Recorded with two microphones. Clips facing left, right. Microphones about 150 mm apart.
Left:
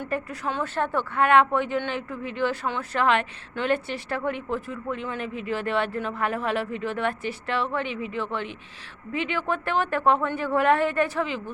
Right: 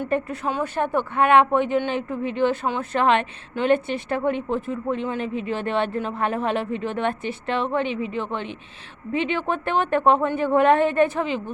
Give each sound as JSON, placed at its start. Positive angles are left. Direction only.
{"t": 0.0, "sound": "a woman's voice", "side_deg": -20}